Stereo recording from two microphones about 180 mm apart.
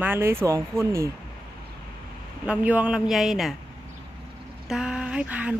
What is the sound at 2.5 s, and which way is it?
Speech, 5° right (ahead or behind).